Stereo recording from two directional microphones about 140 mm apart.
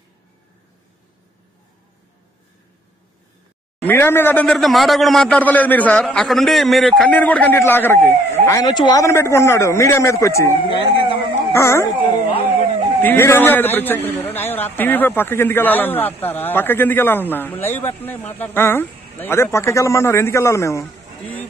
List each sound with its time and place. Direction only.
3.8 s a man's voice: 15° left (ahead or behind)
4.6 s a man's voice: centre (ahead or behind); by 10.5 s 20° left (ahead or behind)
11.5 s speech: 20° left (ahead or behind)
11.9 s speech: 35° left (ahead or behind)
13.0 s a man's voice: 15° left (ahead or behind)